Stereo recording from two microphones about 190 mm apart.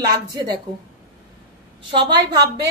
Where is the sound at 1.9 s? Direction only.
25° right (ahead or behind).